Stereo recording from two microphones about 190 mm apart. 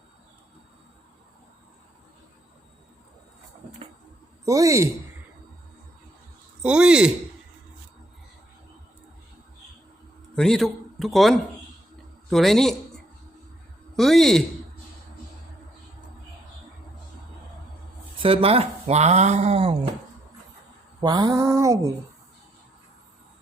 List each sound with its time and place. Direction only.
4.4 s a sound: 15° right (ahead or behind)
6.6 s speech: 5° right (ahead or behind)
10.3 s a man's voice: centre (ahead or behind)
13.9 s speech: centre (ahead or behind)
18.2 s speech: 30° right (ahead or behind)
21.0 s a sound: 20° right (ahead or behind)